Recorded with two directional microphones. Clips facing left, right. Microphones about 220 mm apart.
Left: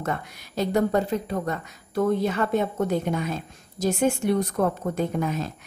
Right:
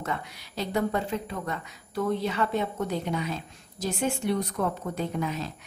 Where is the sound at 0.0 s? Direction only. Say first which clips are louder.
Left 4 dB; 45° left (ahead or behind).